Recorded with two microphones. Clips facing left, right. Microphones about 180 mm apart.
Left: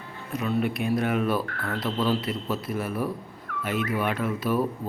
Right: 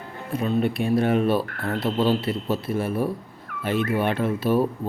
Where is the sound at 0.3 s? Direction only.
30° right (ahead or behind).